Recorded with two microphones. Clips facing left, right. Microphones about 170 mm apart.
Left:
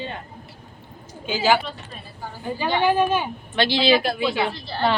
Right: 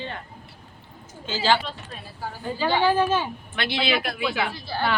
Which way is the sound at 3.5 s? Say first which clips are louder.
Left 7 dB; 30° left (ahead or behind).